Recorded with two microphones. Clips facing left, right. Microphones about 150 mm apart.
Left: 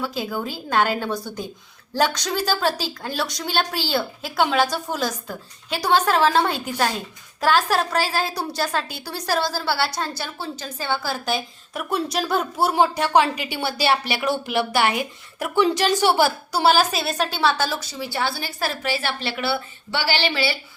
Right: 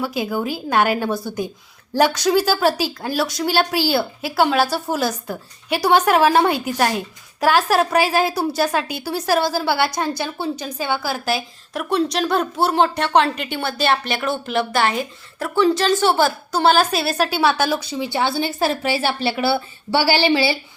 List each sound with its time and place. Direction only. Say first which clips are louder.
0.0 s a woman's voice: right 4 dB; 10° right (ahead or behind)